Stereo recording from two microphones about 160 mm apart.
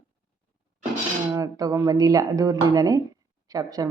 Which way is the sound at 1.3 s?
25° right (ahead or behind).